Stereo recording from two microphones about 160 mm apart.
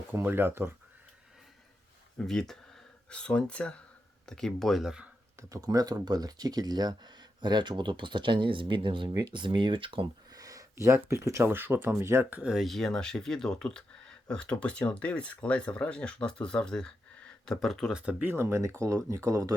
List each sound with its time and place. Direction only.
0.1 s speech: 15° right (ahead or behind)
2.1 s speech: 5° left (ahead or behind)
5.4 s speech: 20° right (ahead or behind)